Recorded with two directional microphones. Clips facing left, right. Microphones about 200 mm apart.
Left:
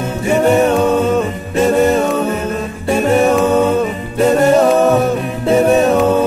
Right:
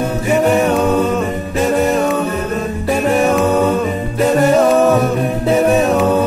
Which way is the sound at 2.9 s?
Centre (ahead or behind).